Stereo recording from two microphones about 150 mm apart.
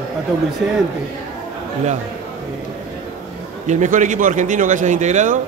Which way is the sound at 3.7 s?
55° right (ahead or behind).